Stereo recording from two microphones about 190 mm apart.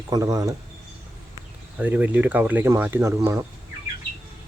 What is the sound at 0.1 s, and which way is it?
Speech, 20° right (ahead or behind).